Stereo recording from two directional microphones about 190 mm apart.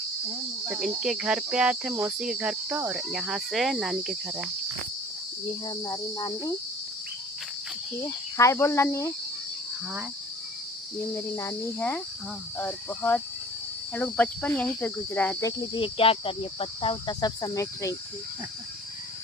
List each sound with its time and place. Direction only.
0.7 s cricket: 5° right (ahead or behind)
5.6 s cricket: 20° left (ahead or behind)
8.0 s speech: 15° left (ahead or behind)
11.3 s speech: 15° left (ahead or behind)